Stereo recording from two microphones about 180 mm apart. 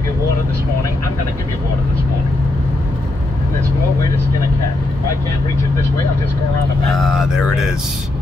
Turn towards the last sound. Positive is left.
turn(degrees=-5)  # may be behind; listen again after turning